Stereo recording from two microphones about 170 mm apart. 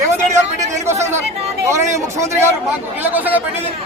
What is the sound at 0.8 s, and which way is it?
Speech, 15° right (ahead or behind).